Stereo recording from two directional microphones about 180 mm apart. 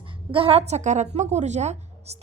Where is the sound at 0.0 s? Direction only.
30° right (ahead or behind).